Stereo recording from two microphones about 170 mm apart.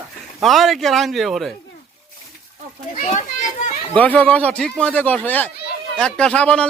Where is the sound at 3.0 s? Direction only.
45° left (ahead or behind).